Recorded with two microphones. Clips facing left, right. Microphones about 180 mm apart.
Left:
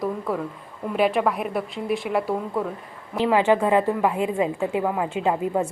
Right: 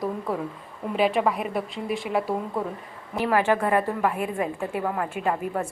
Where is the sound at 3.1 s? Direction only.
20° left (ahead or behind).